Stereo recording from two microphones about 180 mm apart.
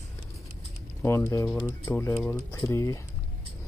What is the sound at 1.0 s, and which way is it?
Speech, 15° left (ahead or behind).